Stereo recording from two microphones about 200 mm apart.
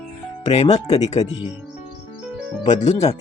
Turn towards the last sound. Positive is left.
turn(degrees=35)  # may be behind; listen again after turning